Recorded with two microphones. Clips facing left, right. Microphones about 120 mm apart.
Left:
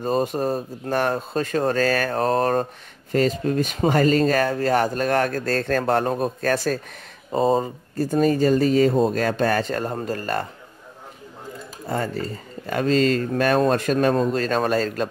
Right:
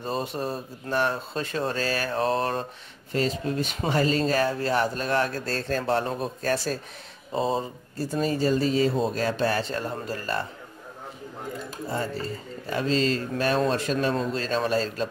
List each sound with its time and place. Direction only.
0.0 s speech: 45° left (ahead or behind)
12.6 s speech: 55° left (ahead or behind)